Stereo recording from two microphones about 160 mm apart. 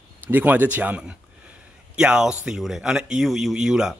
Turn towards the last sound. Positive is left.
turn(degrees=-5)  # may be behind; listen again after turning